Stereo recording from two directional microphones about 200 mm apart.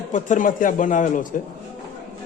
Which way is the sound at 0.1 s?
40° left (ahead or behind).